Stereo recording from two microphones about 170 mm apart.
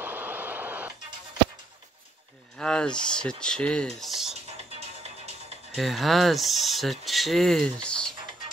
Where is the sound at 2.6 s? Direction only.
5° left (ahead or behind).